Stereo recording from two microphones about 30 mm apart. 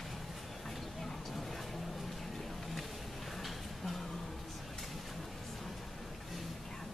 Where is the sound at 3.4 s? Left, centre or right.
Centre.